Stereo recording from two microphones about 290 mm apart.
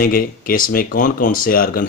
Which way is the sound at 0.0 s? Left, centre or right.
Left.